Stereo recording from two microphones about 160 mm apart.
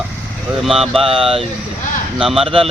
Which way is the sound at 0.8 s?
Centre (ahead or behind).